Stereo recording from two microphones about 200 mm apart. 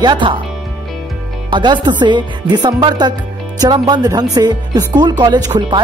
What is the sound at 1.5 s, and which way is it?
Speech, 20° right (ahead or behind).